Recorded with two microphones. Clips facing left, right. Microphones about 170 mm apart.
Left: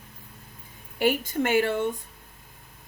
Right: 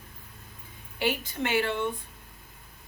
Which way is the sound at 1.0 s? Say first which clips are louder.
Left 5 dB; 45° left (ahead or behind).